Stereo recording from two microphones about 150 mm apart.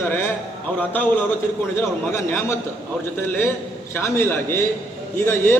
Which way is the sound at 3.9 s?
15° left (ahead or behind).